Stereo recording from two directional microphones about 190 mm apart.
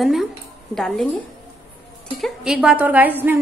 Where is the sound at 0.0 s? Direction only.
Centre (ahead or behind).